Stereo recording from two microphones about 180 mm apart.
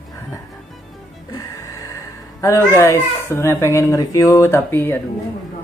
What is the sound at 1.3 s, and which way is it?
Music, 20° left (ahead or behind).